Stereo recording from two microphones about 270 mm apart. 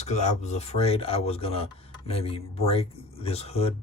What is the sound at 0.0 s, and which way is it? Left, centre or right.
Speech, left.